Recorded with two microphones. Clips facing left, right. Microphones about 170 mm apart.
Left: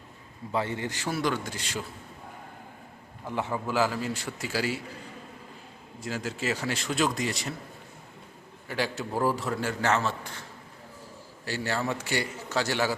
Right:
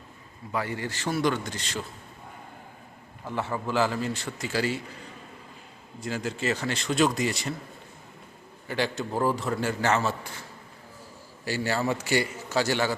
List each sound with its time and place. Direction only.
0.5 s a man's voice: 25° left (ahead or behind)
1.1 s a man's voice: centre (ahead or behind)
3.2 s a man's voice: 15° left (ahead or behind)
6.0 s a man's voice: centre (ahead or behind)
8.6 s a man's voice: 5° left (ahead or behind)
11.4 s a man's voice: 5° right (ahead or behind)